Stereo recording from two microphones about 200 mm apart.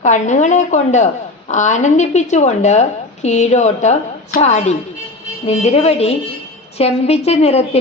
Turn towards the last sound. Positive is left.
turn(degrees=30)  # may be behind; listen again after turning